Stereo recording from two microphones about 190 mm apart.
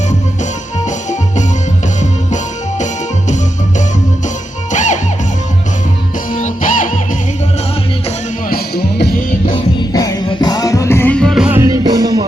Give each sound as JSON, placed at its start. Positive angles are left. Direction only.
{"t": 2.0, "sound": "music", "side_deg": 40}
{"t": 4.7, "sound": "music", "side_deg": 40}
{"t": 6.3, "sound": "music", "side_deg": 45}
{"t": 8.4, "sound": "music", "side_deg": 55}
{"t": 9.5, "sound": "music", "side_deg": 25}